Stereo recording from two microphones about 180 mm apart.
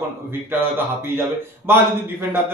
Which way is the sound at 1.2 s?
15° right (ahead or behind).